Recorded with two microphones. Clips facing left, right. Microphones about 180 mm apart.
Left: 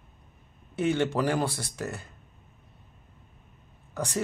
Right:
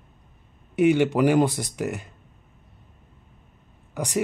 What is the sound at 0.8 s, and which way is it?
Speech, 15° right (ahead or behind).